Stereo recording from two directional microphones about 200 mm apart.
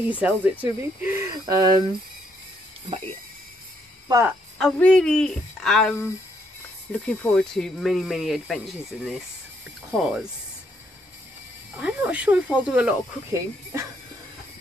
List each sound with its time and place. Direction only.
0.1 s speech: 10° right (ahead or behind)
4.1 s speech: 10° right (ahead or behind)
4.6 s speech: 5° left (ahead or behind)
11.7 s speech: 5° right (ahead or behind)